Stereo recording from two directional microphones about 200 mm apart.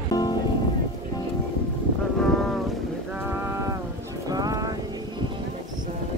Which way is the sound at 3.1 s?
5° right (ahead or behind).